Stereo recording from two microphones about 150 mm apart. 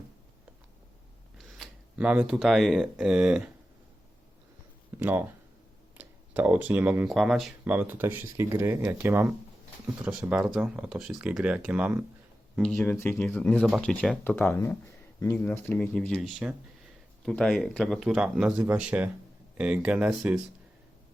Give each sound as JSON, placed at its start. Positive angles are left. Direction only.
{"t": 1.4, "sound": "speech", "side_deg": 0}
{"t": 4.9, "sound": "speech", "side_deg": -15}
{"t": 7.1, "sound": "speech", "side_deg": 0}
{"t": 7.6, "sound": "speech", "side_deg": -10}
{"t": 12.6, "sound": "speech", "side_deg": 5}
{"t": 13.0, "sound": "speech", "side_deg": 15}